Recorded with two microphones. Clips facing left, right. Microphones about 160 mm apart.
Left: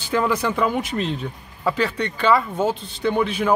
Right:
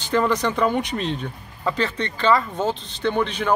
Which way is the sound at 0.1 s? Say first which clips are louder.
Even; 10° left (ahead or behind).